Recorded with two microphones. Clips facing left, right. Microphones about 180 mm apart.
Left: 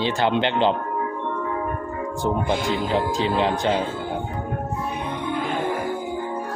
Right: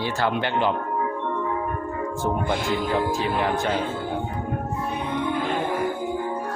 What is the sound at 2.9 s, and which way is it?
Speech, 25° left (ahead or behind).